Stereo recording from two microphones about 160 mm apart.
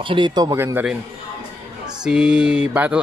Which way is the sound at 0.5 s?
15° right (ahead or behind).